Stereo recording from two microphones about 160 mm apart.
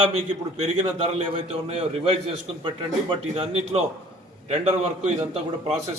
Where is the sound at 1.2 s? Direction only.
40° right (ahead or behind).